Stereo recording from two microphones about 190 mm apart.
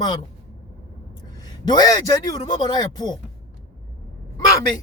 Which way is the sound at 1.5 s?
20° left (ahead or behind).